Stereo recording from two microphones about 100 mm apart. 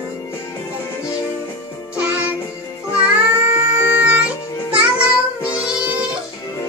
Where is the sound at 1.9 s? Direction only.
15° right (ahead or behind).